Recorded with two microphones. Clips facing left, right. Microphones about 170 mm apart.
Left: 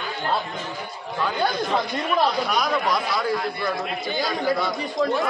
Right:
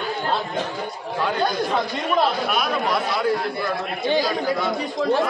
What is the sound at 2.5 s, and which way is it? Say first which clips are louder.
Speech: even; 5° right (ahead or behind).